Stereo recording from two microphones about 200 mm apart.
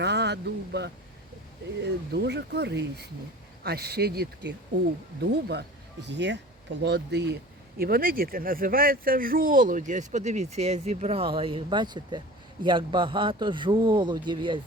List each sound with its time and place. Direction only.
0.0 s speech: 60° right (ahead or behind); by 14.6 s 25° right (ahead or behind)